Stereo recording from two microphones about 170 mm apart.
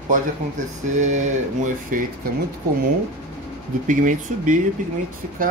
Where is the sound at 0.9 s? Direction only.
45° right (ahead or behind).